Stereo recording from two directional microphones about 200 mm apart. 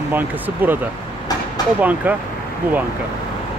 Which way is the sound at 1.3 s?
20° left (ahead or behind).